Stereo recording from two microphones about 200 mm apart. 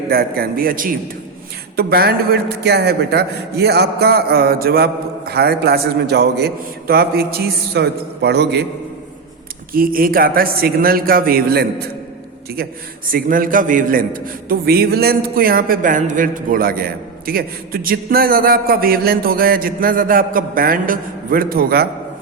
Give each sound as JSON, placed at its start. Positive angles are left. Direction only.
{"t": 0.1, "sound": "a man's voice", "side_deg": -50}
{"t": 9.7, "sound": "a man's voice", "side_deg": -45}
{"t": 13.1, "sound": "a man's voice", "side_deg": -45}